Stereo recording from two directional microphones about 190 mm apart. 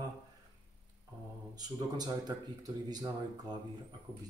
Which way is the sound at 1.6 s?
20° right (ahead or behind).